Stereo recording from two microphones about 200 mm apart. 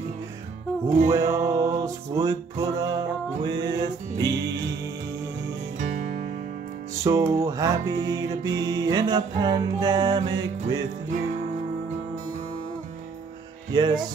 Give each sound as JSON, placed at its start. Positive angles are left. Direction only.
{"t": 0.8, "sound": "music", "side_deg": -35}
{"t": 1.1, "sound": "music", "side_deg": -15}
{"t": 5.8, "sound": "music", "side_deg": -40}
{"t": 7.0, "sound": "music", "side_deg": -15}